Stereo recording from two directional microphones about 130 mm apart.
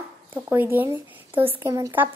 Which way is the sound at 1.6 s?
25° right (ahead or behind).